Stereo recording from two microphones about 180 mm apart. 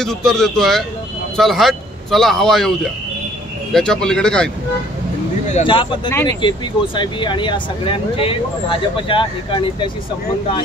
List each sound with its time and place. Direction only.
0.0 s speech: centre (ahead or behind)
5.7 s speech: 25° left (ahead or behind)